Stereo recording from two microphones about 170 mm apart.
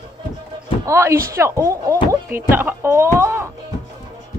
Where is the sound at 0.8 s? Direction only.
15° right (ahead or behind).